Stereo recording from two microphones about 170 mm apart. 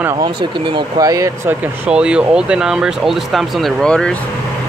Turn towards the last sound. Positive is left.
turn(degrees=5)  # may be behind; listen again after turning